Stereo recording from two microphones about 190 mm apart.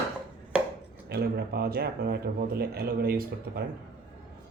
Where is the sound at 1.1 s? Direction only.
55° right (ahead or behind).